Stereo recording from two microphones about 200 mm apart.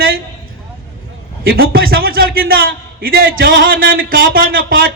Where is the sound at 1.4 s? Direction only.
50° right (ahead or behind).